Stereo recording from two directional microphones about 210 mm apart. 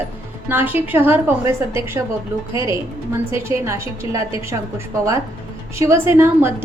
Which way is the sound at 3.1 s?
15° right (ahead or behind).